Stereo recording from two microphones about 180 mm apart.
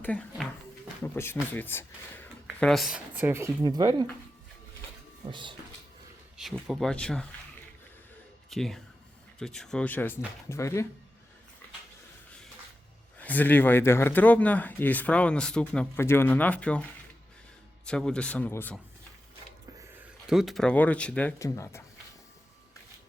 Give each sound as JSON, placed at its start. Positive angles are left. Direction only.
{"t": 0.0, "sound": "speech", "side_deg": 5}
{"t": 5.3, "sound": "speech", "side_deg": -25}
{"t": 6.3, "sound": "speech", "side_deg": 0}
{"t": 8.4, "sound": "speech", "side_deg": 0}
{"t": 13.1, "sound": "speech", "side_deg": 10}
{"t": 17.8, "sound": "speech", "side_deg": 5}
{"t": 20.2, "sound": "speech", "side_deg": 0}